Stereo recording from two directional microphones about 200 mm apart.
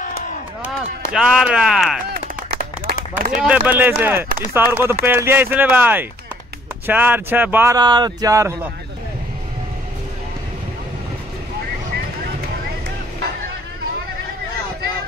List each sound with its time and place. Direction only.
1.1 s speech: 5° right (ahead or behind)
2.5 s a sound: 50° right (ahead or behind)
3.4 s speech: 10° right (ahead or behind)